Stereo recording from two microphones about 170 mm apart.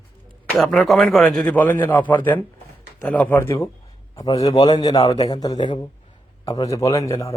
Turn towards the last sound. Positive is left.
turn(degrees=20)  # may be behind; listen again after turning